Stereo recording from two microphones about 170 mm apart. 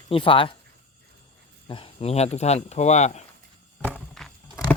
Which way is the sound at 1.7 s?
30° left (ahead or behind).